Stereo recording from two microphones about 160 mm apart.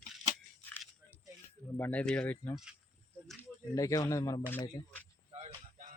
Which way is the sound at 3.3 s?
20° left (ahead or behind).